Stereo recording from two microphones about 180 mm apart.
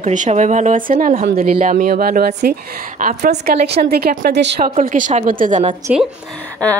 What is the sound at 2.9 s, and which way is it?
Speech, 45° right (ahead or behind).